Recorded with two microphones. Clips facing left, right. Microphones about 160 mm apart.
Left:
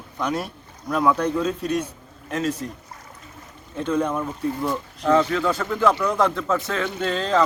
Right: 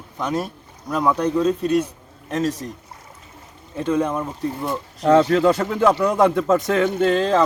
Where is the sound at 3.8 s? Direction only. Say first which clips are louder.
Right 2 dB; centre (ahead or behind).